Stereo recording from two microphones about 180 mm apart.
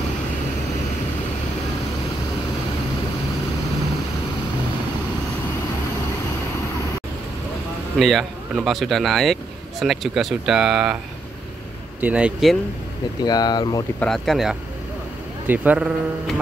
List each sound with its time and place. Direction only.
8.0 s speech: centre (ahead or behind)
12.0 s speech: 5° right (ahead or behind)
13.2 s speech: 20° left (ahead or behind)
13.9 s a man's voice: 5° left (ahead or behind)